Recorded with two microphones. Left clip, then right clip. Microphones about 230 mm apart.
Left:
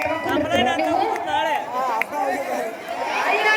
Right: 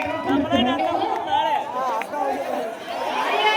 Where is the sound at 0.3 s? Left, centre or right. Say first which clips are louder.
Even; left.